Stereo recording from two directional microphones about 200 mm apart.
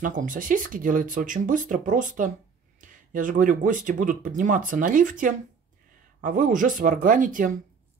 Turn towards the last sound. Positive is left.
turn(degrees=-40)  # may be behind; listen again after turning